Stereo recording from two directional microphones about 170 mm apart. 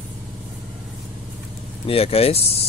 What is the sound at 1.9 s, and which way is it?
Speech, 35° left (ahead or behind).